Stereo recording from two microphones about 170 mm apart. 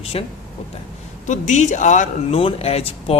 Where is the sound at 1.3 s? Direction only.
45° left (ahead or behind).